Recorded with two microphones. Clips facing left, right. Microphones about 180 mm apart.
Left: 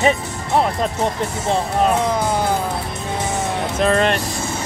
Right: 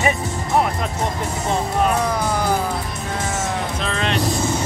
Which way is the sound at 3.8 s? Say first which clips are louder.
Left 9 dB; 50° left (ahead or behind).